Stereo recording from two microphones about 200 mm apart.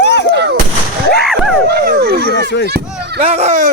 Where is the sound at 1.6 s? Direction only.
50° right (ahead or behind).